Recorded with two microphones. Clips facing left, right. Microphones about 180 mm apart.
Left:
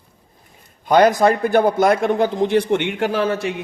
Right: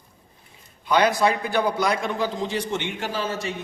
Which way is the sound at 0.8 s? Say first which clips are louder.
Left 6 dB; 45° left (ahead or behind).